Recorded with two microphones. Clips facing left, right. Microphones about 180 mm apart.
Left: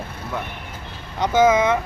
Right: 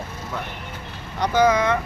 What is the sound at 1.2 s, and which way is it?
Speech, 20° left (ahead or behind).